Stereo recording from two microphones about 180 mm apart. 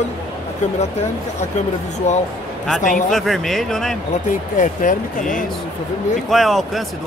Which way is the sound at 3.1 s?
Centre (ahead or behind).